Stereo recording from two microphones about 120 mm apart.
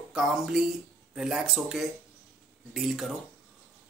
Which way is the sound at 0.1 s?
5° right (ahead or behind).